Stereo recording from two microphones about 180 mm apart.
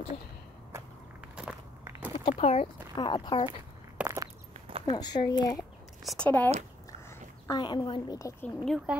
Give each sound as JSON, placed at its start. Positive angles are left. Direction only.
{"t": 1.3, "sound": "walk", "side_deg": -10}
{"t": 2.3, "sound": "speech", "side_deg": 35}
{"t": 4.0, "sound": "walk", "side_deg": -15}
{"t": 4.6, "sound": "a sound", "side_deg": -30}
{"t": 4.8, "sound": "speech", "side_deg": 25}
{"t": 6.0, "sound": "speech", "side_deg": 5}
{"t": 7.1, "sound": "a woman's voice", "side_deg": 20}
{"t": 8.6, "sound": "speech", "side_deg": 0}